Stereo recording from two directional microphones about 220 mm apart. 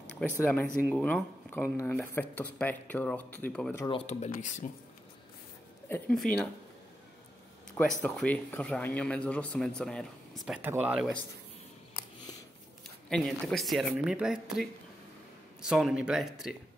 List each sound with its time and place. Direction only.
0.2 s speech: 5° left (ahead or behind)
3.8 s speech: 25° left (ahead or behind)
5.9 s speech: 5° left (ahead or behind)
8.0 s speech: 5° left (ahead or behind)
13.1 s speech: centre (ahead or behind)